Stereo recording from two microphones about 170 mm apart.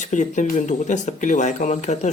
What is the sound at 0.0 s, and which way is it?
A man's voice, 45° left (ahead or behind).